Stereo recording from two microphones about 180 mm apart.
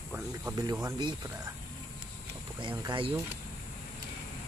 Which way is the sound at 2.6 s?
25° right (ahead or behind).